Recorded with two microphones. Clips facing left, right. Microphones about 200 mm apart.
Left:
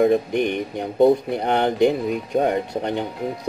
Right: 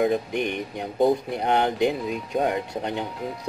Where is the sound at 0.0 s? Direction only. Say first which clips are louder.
Left 5 dB; 55° left (ahead or behind).